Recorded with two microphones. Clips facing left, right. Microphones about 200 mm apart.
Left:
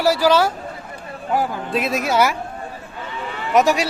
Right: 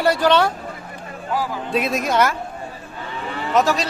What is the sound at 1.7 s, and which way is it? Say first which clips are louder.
Speech: even; centre (ahead or behind).